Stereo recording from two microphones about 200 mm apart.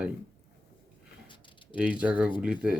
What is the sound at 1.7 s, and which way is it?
Speech, 5° right (ahead or behind).